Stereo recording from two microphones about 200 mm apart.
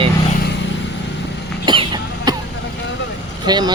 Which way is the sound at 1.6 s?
25° right (ahead or behind).